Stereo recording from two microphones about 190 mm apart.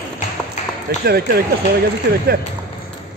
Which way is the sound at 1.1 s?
55° right (ahead or behind).